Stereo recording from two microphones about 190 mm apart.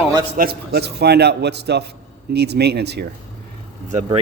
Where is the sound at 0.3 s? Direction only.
55° right (ahead or behind).